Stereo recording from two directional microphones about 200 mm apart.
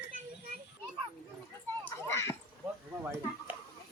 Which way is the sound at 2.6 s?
10° right (ahead or behind).